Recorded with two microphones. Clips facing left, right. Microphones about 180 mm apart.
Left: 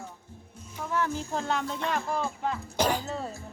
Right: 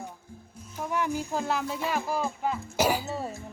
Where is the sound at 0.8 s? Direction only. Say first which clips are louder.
Right 1 dB; 15° right (ahead or behind).